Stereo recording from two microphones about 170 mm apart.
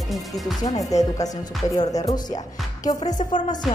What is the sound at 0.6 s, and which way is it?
Speech, 20° left (ahead or behind).